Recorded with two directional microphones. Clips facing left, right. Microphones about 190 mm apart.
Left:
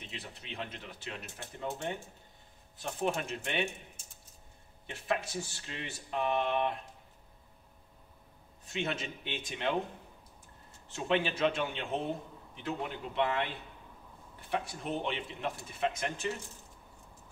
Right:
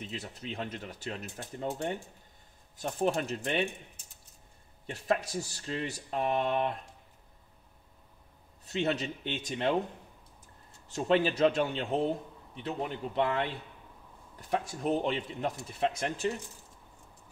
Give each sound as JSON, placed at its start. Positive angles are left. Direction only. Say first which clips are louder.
{"t": 0.1, "sound": "speech", "louder": "right 6 dB", "side_deg": -40}
{"t": 2.8, "sound": "speech", "louder": "right 4 dB", "side_deg": -40}
{"t": 5.0, "sound": "speech", "louder": "right 3 dB", "side_deg": -40}
{"t": 8.7, "sound": "speech", "louder": "right 5 dB", "side_deg": -35}
{"t": 10.9, "sound": "speech", "louder": "right 4 dB", "side_deg": -40}
{"t": 14.4, "sound": "speech", "louder": "right 4 dB", "side_deg": -45}